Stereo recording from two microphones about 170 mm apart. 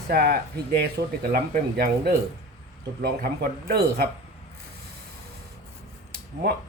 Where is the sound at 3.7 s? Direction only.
65° right (ahead or behind).